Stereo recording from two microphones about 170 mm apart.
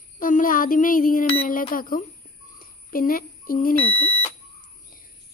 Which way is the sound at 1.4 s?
55° left (ahead or behind).